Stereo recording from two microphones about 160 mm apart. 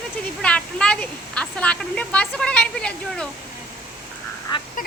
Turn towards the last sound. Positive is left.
turn(degrees=60)  # may be behind; listen again after turning